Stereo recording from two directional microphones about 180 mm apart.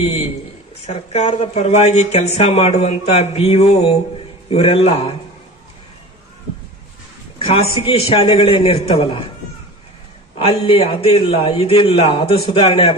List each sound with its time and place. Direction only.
0.9 s speech: 35° left (ahead or behind)
7.3 s speech: 30° left (ahead or behind)
10.3 s speech: 30° left (ahead or behind)